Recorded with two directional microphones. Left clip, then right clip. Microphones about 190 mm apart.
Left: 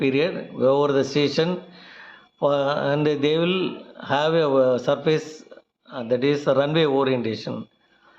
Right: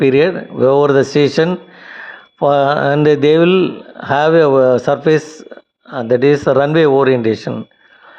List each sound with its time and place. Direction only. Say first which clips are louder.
0.0 s speech: right 10 dB; 45° right (ahead or behind)